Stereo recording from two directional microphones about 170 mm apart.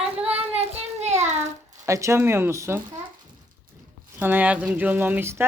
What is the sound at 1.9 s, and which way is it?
Speech, 15° right (ahead or behind).